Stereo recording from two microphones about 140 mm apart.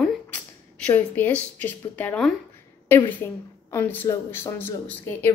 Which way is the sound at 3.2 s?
20° left (ahead or behind).